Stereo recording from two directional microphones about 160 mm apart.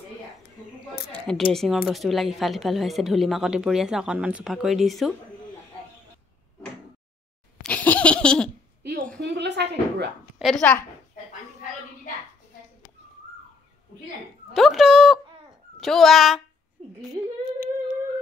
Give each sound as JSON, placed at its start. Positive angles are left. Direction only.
{"t": 1.1, "sound": "a woman's voice", "side_deg": 5}
{"t": 7.6, "sound": "laughter", "side_deg": 10}
{"t": 9.2, "sound": "a sound", "side_deg": -90}
{"t": 10.4, "sound": "a woman's voice", "side_deg": 5}
{"t": 14.5, "sound": "a woman's voice", "side_deg": 0}
{"t": 17.1, "sound": "humming", "side_deg": -25}